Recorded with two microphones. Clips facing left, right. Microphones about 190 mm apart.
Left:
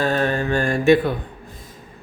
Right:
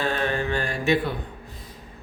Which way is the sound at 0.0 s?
40° left (ahead or behind).